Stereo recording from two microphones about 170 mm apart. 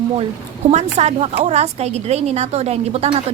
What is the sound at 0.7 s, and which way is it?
A woman's voice, 40° right (ahead or behind).